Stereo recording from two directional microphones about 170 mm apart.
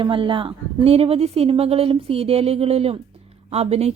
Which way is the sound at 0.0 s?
30° right (ahead or behind).